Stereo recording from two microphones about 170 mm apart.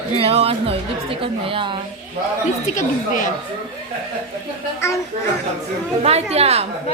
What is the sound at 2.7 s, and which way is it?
Speech, 50° left (ahead or behind).